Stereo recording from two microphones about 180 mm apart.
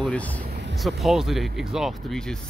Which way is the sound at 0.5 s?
70° right (ahead or behind).